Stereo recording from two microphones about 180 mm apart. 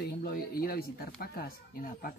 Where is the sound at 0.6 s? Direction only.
55° left (ahead or behind).